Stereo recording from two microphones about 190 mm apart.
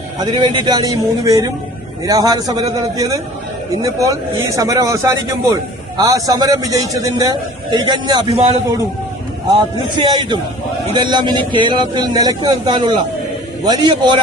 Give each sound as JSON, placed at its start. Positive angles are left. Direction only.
{"t": 0.2, "sound": "a man's voice", "side_deg": -25}
{"t": 3.8, "sound": "a man's voice", "side_deg": -15}
{"t": 10.0, "sound": "a man's voice", "side_deg": -25}